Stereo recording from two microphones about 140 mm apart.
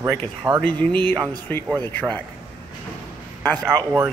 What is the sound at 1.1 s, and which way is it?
Speech, 25° right (ahead or behind).